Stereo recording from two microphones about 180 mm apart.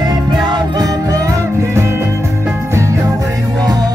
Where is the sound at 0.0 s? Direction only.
25° right (ahead or behind).